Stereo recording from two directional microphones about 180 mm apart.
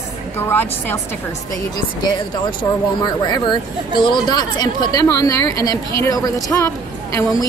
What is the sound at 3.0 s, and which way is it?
A woman's voice, 25° left (ahead or behind).